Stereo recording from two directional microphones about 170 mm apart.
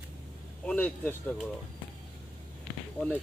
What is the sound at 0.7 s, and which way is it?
Speech, 10° left (ahead or behind).